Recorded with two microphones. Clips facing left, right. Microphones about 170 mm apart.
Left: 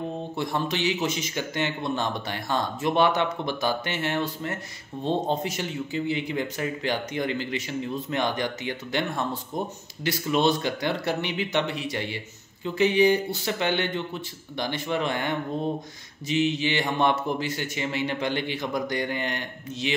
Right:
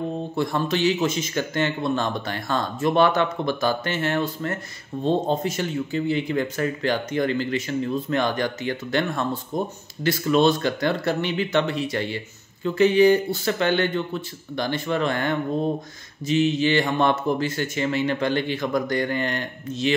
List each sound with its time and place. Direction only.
0.4 s speech: 15° left (ahead or behind)
5.3 s speech: 15° left (ahead or behind)